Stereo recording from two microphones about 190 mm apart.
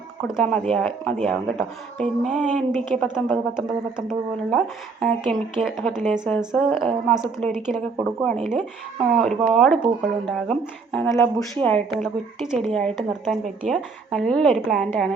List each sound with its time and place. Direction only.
0.3 s speech: centre (ahead or behind)
11.1 s speech: 15° left (ahead or behind)